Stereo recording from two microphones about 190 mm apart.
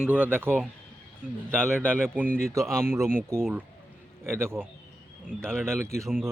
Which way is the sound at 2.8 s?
15° right (ahead or behind).